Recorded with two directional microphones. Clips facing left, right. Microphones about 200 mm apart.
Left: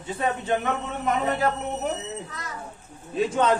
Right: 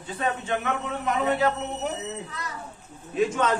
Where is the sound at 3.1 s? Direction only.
30° left (ahead or behind).